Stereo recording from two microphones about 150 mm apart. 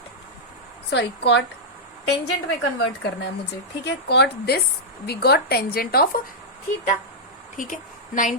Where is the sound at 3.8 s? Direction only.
90° left.